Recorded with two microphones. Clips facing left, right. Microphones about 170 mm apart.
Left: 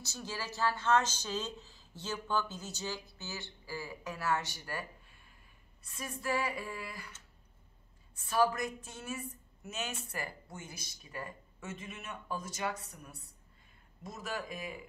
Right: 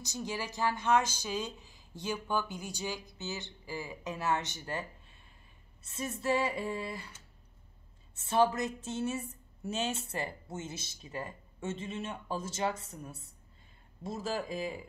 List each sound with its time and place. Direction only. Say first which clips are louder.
0.0 s a woman's voice: right 4 dB; 15° right (ahead or behind)
8.2 s a woman's voice: right 2 dB; 25° right (ahead or behind)